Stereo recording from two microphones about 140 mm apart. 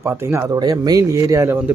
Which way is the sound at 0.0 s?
15° right (ahead or behind).